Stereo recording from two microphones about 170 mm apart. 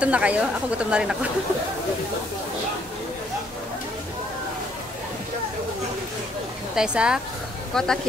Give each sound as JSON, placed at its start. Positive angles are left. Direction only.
{"t": 0.0, "sound": "a woman's voice", "side_deg": -5}
{"t": 6.7, "sound": "speech", "side_deg": -5}